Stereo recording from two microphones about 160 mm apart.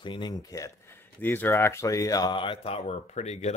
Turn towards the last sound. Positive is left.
turn(degrees=45)  # may be behind; listen again after turning